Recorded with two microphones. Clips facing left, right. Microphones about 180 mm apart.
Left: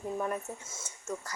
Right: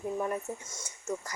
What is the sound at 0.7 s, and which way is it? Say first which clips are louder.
Speech: even; 5° left (ahead or behind).